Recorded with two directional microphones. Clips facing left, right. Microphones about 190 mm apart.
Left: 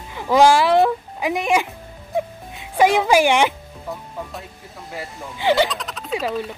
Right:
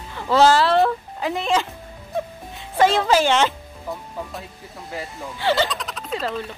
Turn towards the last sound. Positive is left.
turn(degrees=15)  # may be behind; listen again after turning